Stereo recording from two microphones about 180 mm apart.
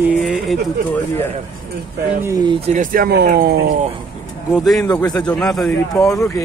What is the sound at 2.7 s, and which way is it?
Speech, 55° right (ahead or behind).